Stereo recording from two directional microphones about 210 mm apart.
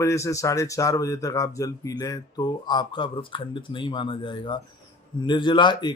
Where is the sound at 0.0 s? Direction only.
15° left (ahead or behind).